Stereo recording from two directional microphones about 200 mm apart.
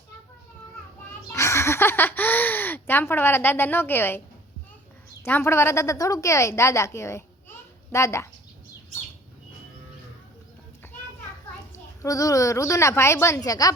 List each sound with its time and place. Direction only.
1.3 s speech: 15° left (ahead or behind)
5.2 s a woman's voice: 10° left (ahead or behind)
10.8 s children playing: 10° left (ahead or behind)
12.0 s a woman's voice: 15° left (ahead or behind)